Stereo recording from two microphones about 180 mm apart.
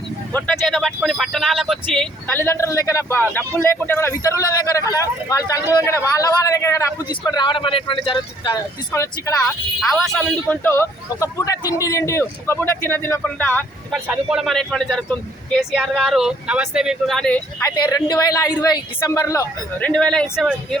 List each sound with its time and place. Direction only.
0.3 s speech: 5° left (ahead or behind)
2.3 s a man's voice: 15° left (ahead or behind)
8.9 s a man's voice: 15° left (ahead or behind)
9.9 s a man's voice: 5° left (ahead or behind)
13.9 s speech: 5° right (ahead or behind)
17.9 s speech: 20° left (ahead or behind)
19.8 s speech: 5° left (ahead or behind)